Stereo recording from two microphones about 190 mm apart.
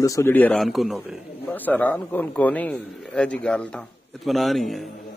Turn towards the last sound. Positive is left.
turn(degrees=0)  # may be behind; listen again after turning